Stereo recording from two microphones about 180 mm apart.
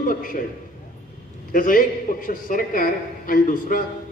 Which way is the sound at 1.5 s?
50° left (ahead or behind).